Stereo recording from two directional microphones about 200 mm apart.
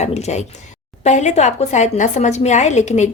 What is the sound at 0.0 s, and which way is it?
A woman's voice, 35° left (ahead or behind).